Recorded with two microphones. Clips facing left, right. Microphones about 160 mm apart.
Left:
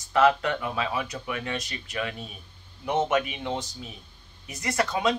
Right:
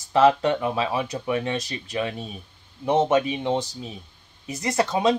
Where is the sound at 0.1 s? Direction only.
25° right (ahead or behind).